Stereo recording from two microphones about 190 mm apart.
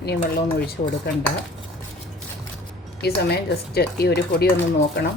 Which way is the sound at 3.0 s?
55° left (ahead or behind).